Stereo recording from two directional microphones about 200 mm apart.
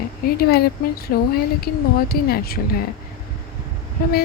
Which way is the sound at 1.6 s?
50° left (ahead or behind).